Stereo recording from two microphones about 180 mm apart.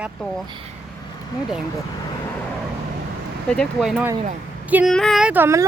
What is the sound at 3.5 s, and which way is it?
A woman's voice, centre (ahead or behind).